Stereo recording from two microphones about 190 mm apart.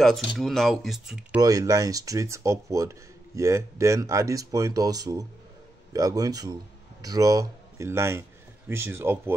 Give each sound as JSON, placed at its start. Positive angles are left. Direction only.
{"t": 0.4, "sound": "speech", "side_deg": 0}
{"t": 1.4, "sound": "speech", "side_deg": -20}